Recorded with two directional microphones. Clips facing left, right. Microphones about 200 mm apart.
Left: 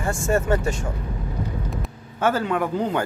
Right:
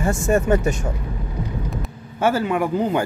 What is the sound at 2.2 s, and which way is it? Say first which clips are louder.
Speech: right 2 dB; 10° right (ahead or behind).